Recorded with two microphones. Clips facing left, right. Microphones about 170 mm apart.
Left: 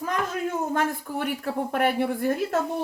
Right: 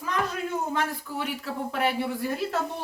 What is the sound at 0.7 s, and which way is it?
Speech, 50° left (ahead or behind).